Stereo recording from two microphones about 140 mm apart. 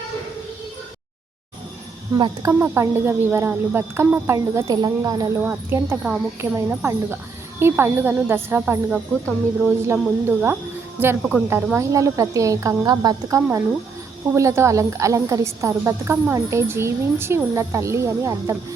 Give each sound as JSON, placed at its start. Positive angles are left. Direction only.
{"t": 2.4, "sound": "a woman's voice", "side_deg": -20}
{"t": 5.4, "sound": "a woman's voice", "side_deg": -15}